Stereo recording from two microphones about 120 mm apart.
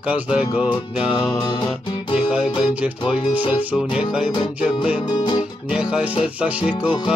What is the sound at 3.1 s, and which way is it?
Music, 10° right (ahead or behind).